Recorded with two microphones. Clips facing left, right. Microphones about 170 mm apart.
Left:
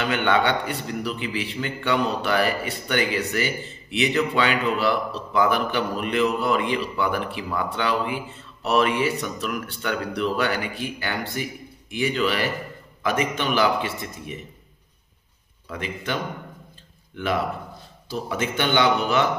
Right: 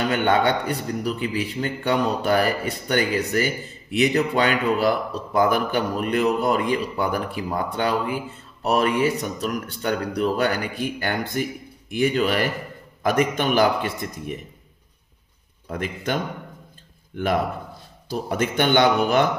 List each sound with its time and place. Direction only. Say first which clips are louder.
0.0 s a man's voice: right 2 dB; 40° right (ahead or behind)
17.1 s a man's voice: right 2 dB; 50° right (ahead or behind)